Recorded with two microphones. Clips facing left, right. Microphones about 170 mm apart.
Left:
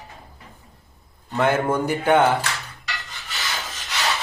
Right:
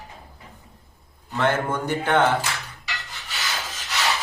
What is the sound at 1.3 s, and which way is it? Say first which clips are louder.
Speech: left 3 dB; 10° left (ahead or behind).